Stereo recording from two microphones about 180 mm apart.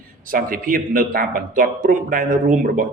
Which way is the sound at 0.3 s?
50° right (ahead or behind).